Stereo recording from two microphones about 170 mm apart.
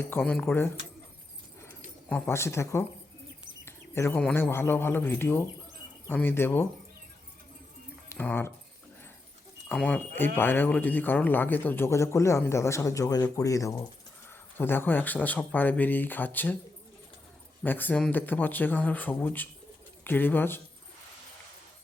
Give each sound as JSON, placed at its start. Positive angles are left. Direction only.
{"t": 0.0, "sound": "speech", "side_deg": 10}
{"t": 2.0, "sound": "speech", "side_deg": 10}
{"t": 3.6, "sound": "bird", "side_deg": 15}
{"t": 4.2, "sound": "speech", "side_deg": 10}
{"t": 8.1, "sound": "speech", "side_deg": 10}
{"t": 9.6, "sound": "speech", "side_deg": 10}
{"t": 17.6, "sound": "speech", "side_deg": 10}